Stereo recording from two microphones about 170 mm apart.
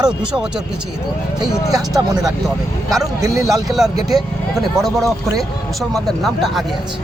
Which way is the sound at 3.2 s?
20° right (ahead or behind).